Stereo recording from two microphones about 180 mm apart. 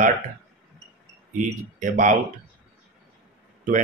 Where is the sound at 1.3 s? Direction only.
50° right (ahead or behind).